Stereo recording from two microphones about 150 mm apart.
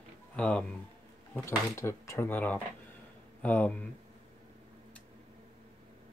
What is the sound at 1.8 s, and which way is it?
Speech, 20° left (ahead or behind).